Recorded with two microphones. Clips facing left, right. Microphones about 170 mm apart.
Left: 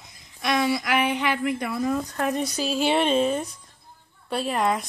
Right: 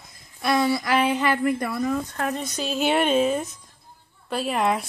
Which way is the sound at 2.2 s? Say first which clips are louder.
Left 2 dB; 15° left (ahead or behind).